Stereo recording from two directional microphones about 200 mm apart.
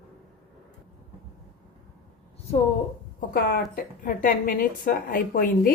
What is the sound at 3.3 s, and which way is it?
A woman's voice, 45° left (ahead or behind).